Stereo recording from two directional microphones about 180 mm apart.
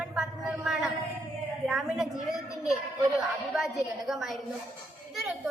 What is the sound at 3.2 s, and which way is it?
Speech, centre (ahead or behind).